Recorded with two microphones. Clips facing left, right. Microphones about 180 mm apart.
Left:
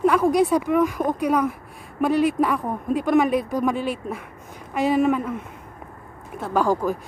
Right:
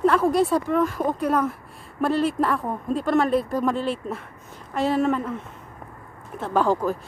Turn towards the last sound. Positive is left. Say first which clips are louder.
# even
turn(degrees=10)  # may be behind; listen again after turning